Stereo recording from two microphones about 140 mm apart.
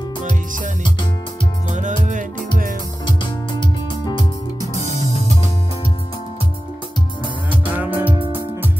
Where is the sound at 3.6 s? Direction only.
35° left (ahead or behind).